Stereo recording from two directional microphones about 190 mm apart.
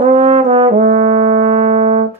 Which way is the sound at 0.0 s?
35° right (ahead or behind).